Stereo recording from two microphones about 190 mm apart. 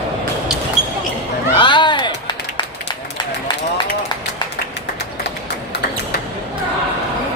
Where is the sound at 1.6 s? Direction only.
25° left (ahead or behind).